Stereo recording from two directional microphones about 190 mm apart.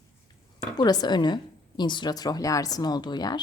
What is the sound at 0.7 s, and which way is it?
A woman's voice, 20° left (ahead or behind).